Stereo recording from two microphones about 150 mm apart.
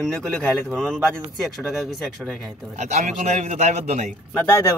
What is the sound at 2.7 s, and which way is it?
A man's voice, 50° right (ahead or behind).